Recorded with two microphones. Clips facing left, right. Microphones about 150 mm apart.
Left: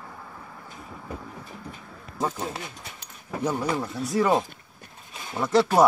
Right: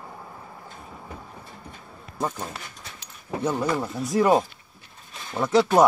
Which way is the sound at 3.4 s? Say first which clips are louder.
Right 1 dB; 10° left (ahead or behind).